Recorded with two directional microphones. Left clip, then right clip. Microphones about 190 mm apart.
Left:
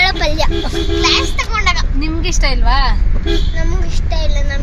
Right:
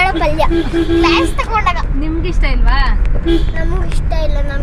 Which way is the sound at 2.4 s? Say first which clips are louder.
Left 4 dB; 30° left (ahead or behind).